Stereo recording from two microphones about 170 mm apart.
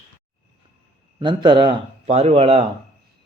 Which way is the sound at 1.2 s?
25° right (ahead or behind).